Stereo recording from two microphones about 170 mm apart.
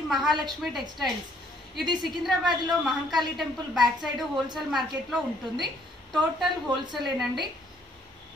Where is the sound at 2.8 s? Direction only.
Centre (ahead or behind).